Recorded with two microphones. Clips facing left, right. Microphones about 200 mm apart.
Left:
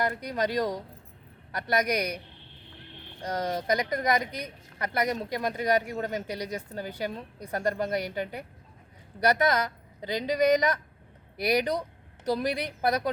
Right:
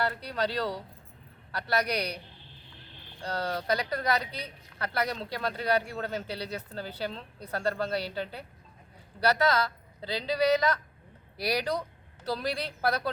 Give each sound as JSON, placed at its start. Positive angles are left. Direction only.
{"t": 0.0, "sound": "speech", "side_deg": 15}
{"t": 3.2, "sound": "a woman's voice", "side_deg": 15}